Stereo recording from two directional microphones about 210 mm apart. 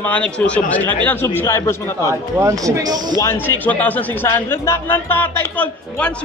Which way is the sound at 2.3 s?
15° right (ahead or behind).